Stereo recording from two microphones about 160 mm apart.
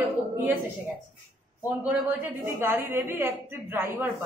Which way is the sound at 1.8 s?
10° right (ahead or behind).